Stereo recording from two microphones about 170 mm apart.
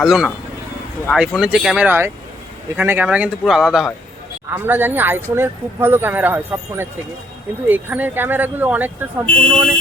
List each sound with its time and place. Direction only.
0.0 s speech: centre (ahead or behind)
9.2 s speech: 5° left (ahead or behind)